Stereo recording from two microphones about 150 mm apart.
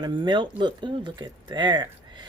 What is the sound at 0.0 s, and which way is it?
Speech, 30° right (ahead or behind).